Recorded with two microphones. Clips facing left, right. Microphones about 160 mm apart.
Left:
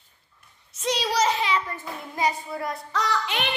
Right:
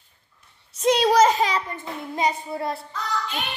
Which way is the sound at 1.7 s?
20° right (ahead or behind).